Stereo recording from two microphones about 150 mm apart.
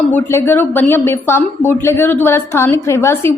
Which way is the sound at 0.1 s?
15° left (ahead or behind).